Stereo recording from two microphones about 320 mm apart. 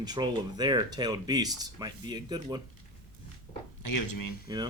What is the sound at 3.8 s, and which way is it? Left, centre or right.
Speech, left.